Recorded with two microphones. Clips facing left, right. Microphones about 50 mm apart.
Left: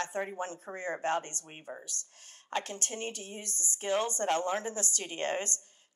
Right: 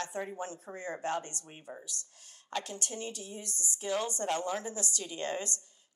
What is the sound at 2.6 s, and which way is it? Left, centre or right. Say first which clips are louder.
A woman's voice: left 2 dB; left.